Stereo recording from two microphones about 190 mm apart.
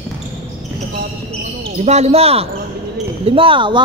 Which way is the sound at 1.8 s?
35° right (ahead or behind).